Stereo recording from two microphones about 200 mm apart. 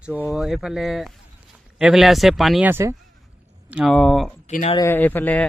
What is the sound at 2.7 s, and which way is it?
Speech, 15° right (ahead or behind).